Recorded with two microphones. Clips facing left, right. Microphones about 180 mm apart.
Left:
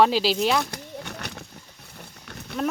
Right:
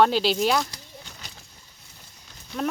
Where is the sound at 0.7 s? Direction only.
65° left (ahead or behind).